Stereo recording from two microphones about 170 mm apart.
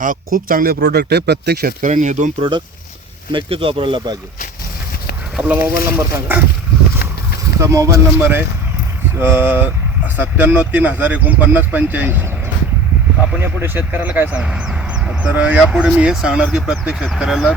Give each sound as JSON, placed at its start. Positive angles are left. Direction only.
{"t": 0.0, "sound": "speech", "side_deg": -55}
{"t": 1.8, "sound": "speech", "side_deg": -45}
{"t": 2.4, "sound": "speech", "side_deg": -30}
{"t": 5.4, "sound": "speech", "side_deg": -15}
{"t": 7.6, "sound": "speech", "side_deg": -20}
{"t": 13.3, "sound": "speech", "side_deg": -10}